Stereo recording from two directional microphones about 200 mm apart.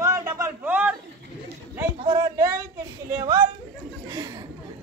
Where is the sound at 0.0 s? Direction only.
20° right (ahead or behind).